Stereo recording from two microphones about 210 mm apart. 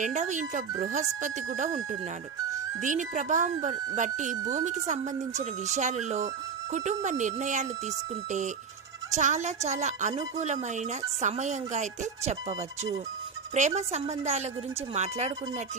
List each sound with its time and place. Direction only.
0.0 s speech: 35° right (ahead or behind)
2.8 s speech: 35° right (ahead or behind)